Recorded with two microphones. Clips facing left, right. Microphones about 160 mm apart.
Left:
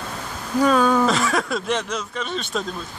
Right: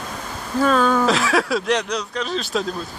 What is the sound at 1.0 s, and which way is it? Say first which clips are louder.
Speech: right 1 dB; centre (ahead or behind).